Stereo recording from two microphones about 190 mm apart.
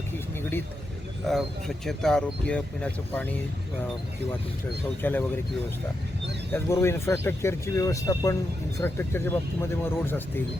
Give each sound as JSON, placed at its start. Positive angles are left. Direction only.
{"t": 1.3, "sound": "speech", "side_deg": 0}
{"t": 5.0, "sound": "speech", "side_deg": 10}
{"t": 6.5, "sound": "speech", "side_deg": 15}